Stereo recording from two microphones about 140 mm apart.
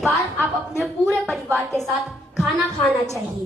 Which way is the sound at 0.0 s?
Centre (ahead or behind).